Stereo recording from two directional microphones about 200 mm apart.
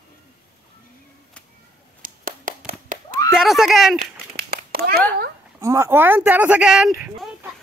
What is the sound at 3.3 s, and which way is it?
Speech, centre (ahead or behind).